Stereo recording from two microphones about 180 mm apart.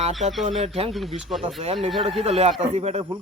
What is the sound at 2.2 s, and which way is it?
Speech, 35° right (ahead or behind).